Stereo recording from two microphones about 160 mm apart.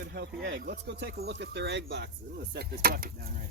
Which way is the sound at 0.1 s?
85° right.